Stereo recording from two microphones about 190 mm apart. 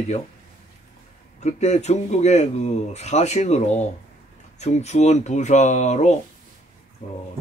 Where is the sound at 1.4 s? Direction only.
35° left (ahead or behind).